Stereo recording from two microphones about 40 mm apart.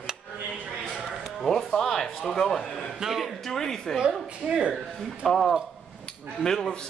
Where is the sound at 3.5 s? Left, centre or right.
Centre.